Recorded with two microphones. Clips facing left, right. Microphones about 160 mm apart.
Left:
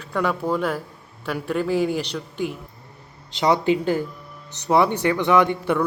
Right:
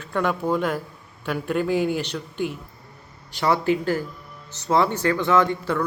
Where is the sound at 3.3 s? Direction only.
20° left (ahead or behind).